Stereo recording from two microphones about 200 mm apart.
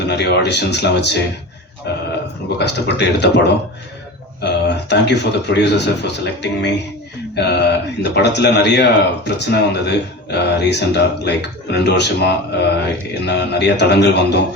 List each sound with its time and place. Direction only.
0.0 s speech: 55° left (ahead or behind)